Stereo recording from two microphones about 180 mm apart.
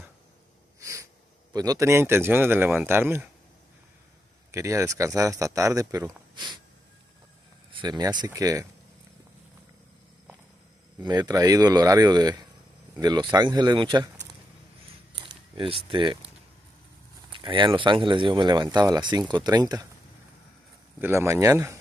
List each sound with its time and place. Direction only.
1.5 s speech: 20° right (ahead or behind)
4.5 s speech: 15° right (ahead or behind)
7.7 s speech: 25° right (ahead or behind)
11.0 s speech: 20° right (ahead or behind)
15.1 s speech: 25° right (ahead or behind)
17.3 s speech: 25° right (ahead or behind)
21.0 s speech: 15° right (ahead or behind)